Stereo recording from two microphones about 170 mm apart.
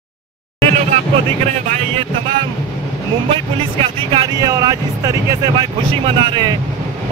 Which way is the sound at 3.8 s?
30° right (ahead or behind).